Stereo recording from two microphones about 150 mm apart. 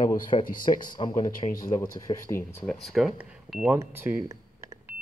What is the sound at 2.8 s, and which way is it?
Speech, centre (ahead or behind).